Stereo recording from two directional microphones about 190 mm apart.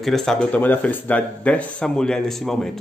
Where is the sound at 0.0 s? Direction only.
Centre (ahead or behind).